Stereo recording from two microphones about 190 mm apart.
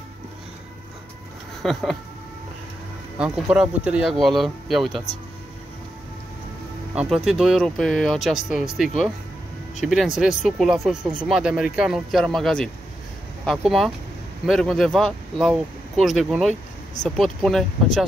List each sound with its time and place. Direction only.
1.6 s speech: centre (ahead or behind)
3.2 s speech: 5° right (ahead or behind)
7.0 s speech: centre (ahead or behind)